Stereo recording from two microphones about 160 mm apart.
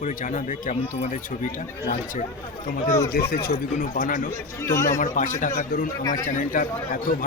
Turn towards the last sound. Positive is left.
turn(degrees=65)  # may be behind; listen again after turning